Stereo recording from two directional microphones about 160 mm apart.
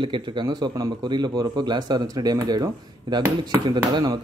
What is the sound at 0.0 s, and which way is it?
Speech, 30° right (ahead or behind).